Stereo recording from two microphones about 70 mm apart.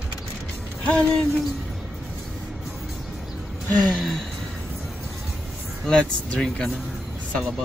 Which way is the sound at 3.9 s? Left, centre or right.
Centre.